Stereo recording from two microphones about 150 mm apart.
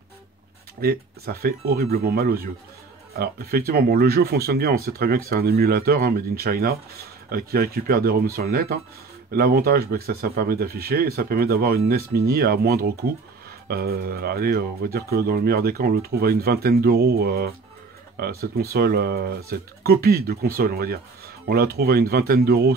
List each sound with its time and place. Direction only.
0.7 s speech: 90° right